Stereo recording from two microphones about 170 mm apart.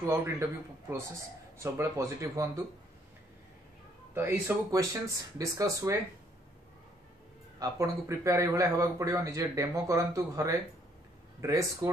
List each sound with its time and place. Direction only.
0.0 s speech: 20° right (ahead or behind)
4.1 s speech: 15° right (ahead or behind)
7.5 s a man's voice: 20° right (ahead or behind)